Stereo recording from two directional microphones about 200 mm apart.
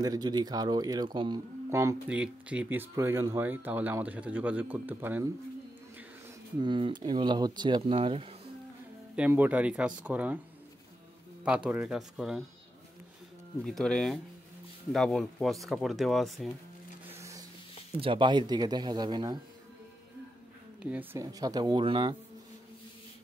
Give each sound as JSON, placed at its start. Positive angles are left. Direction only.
{"t": 0.0, "sound": "speech", "side_deg": -20}
{"t": 6.6, "sound": "speech", "side_deg": -20}
{"t": 9.1, "sound": "speech", "side_deg": -10}
{"t": 11.4, "sound": "speech", "side_deg": -5}
{"t": 13.7, "sound": "speech", "side_deg": 5}
{"t": 17.2, "sound": "a sound", "side_deg": -15}
{"t": 17.9, "sound": "speech", "side_deg": -25}
{"t": 20.8, "sound": "speech", "side_deg": -10}